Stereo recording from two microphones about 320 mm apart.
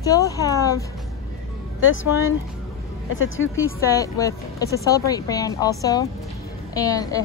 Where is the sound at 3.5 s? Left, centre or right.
Centre.